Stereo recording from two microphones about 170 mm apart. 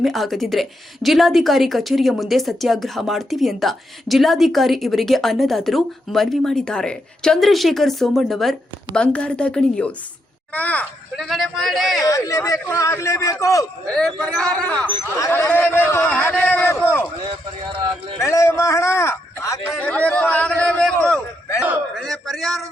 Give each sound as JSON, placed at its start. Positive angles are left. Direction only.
{"t": 0.0, "sound": "a woman's voice", "side_deg": 0}
{"t": 12.0, "sound": "a man's voice", "side_deg": 20}
{"t": 13.8, "sound": "a woman's voice", "side_deg": 5}
{"t": 18.2, "sound": "a man's voice", "side_deg": 15}